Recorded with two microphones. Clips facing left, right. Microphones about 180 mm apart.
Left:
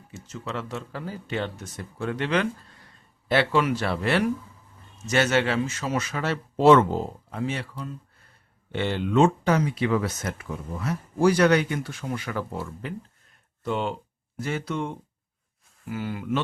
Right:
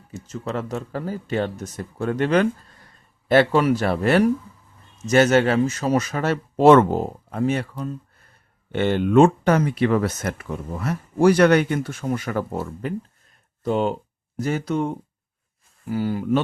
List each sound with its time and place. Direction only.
0.1 s speech: 40° right (ahead or behind)